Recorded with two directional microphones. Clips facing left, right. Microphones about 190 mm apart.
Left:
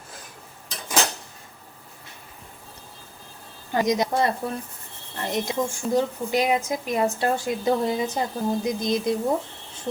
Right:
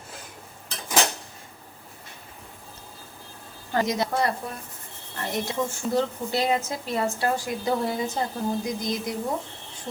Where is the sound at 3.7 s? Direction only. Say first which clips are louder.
Left 3 dB; 15° left (ahead or behind).